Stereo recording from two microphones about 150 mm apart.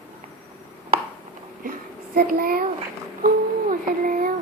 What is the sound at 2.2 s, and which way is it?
Child singing, 85° right.